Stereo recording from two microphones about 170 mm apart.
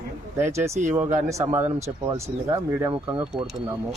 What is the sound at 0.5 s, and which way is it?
Speech, 15° right (ahead or behind).